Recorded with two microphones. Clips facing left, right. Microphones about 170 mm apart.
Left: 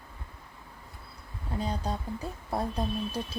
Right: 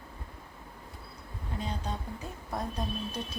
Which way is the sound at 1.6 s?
35° left (ahead or behind).